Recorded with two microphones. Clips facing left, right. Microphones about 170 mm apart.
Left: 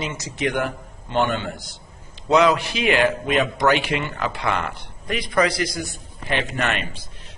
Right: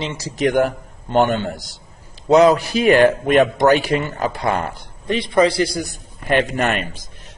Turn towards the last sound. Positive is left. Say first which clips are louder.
# right 5 dB
turn(degrees=-45)  # may be behind; listen again after turning